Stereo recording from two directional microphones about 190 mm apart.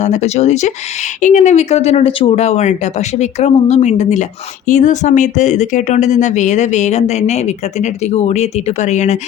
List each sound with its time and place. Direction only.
0.0 s speech: 35° left (ahead or behind)